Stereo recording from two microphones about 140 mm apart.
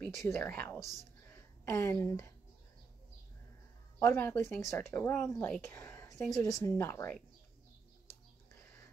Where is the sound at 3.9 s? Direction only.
20° left (ahead or behind).